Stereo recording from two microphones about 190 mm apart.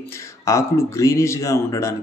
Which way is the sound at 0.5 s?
15° left (ahead or behind).